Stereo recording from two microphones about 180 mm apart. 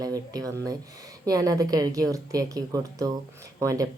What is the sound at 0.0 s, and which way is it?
Speech, 20° right (ahead or behind).